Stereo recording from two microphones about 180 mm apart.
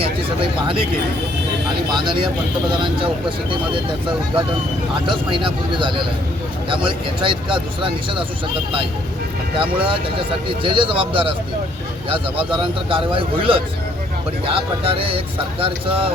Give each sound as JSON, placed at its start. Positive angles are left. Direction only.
{"t": 1.9, "sound": "speech", "side_deg": -25}
{"t": 5.0, "sound": "speech", "side_deg": -25}
{"t": 9.6, "sound": "speech", "side_deg": -30}